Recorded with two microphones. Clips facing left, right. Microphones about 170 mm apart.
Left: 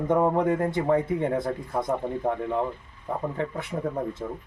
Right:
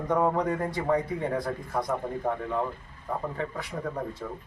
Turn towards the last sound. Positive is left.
turn(degrees=25)  # may be behind; listen again after turning